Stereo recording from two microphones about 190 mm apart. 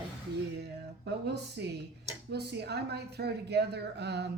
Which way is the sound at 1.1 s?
60° right (ahead or behind).